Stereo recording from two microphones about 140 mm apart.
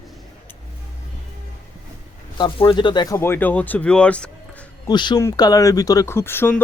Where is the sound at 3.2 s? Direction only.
15° left (ahead or behind).